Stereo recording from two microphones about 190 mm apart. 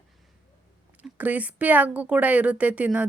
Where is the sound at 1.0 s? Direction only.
10° right (ahead or behind).